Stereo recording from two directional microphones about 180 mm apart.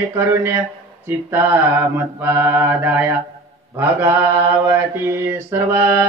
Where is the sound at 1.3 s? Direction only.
10° right (ahead or behind).